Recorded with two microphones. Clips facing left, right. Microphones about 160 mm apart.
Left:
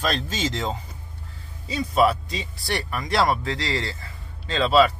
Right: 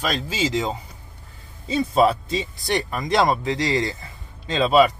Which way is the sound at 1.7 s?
25° right (ahead or behind).